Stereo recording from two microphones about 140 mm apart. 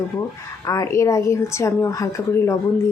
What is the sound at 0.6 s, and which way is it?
Speech, 20° left (ahead or behind).